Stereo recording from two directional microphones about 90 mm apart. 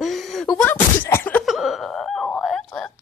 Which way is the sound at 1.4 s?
5° right (ahead or behind).